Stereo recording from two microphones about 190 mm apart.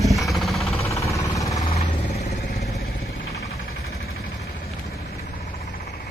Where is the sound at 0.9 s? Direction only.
15° left (ahead or behind).